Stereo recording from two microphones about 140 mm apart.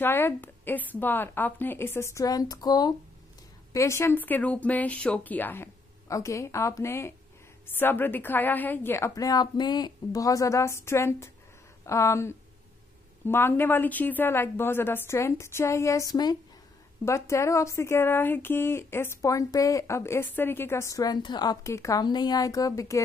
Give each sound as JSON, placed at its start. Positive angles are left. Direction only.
{"t": 0.0, "sound": "speech", "side_deg": 15}